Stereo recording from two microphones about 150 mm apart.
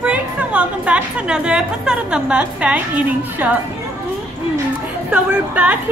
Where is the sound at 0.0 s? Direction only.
10° right (ahead or behind).